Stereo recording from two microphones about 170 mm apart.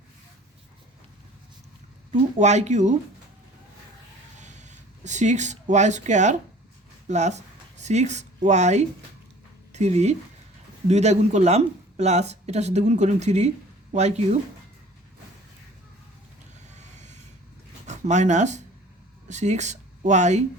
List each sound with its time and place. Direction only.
2.4 s speech: 40° right (ahead or behind)
4.4 s a sound: 45° right (ahead or behind)
7.1 s speech: 45° right (ahead or behind)
16.7 s vehicle: 45° right (ahead or behind)
17.8 s speech: 45° right (ahead or behind)